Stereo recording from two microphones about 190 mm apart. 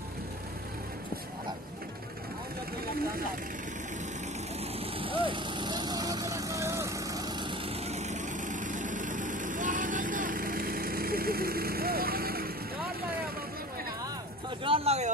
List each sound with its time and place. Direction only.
4.7 s vehicle: 30° right (ahead or behind)
7.9 s vehicle: 40° right (ahead or behind)
14.6 s vehicle: 30° right (ahead or behind)